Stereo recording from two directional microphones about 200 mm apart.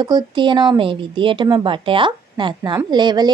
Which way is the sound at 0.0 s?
20° right (ahead or behind).